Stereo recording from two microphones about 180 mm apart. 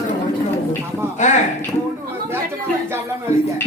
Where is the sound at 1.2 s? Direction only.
40° left (ahead or behind).